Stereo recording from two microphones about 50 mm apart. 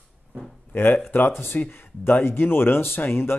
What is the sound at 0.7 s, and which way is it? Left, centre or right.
Speech, left.